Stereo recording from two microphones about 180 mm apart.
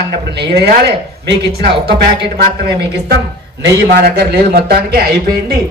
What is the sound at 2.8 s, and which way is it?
Speech, 65° right (ahead or behind).